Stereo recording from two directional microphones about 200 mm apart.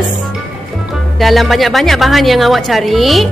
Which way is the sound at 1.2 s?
Centre (ahead or behind).